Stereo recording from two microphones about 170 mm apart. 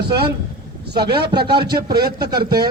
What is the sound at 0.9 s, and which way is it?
Speech, 70° right (ahead or behind).